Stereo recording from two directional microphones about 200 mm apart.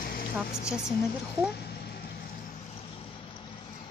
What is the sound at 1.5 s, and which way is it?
Vehicle, 55° left (ahead or behind).